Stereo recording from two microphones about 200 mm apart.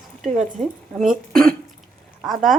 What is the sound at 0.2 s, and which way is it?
Speech, 40° right (ahead or behind).